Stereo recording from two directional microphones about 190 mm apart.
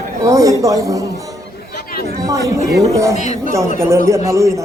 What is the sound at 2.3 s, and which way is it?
Speech, 15° right (ahead or behind).